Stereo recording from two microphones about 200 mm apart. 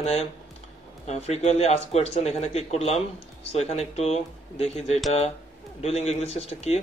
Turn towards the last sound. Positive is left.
turn(degrees=30)  # may be behind; listen again after turning